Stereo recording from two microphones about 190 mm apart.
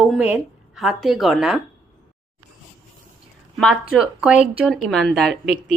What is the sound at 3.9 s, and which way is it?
A woman's voice, 5° right (ahead or behind).